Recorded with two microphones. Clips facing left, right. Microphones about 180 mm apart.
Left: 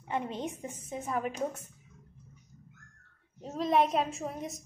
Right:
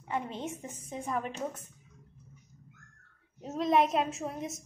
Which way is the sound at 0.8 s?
5° left (ahead or behind).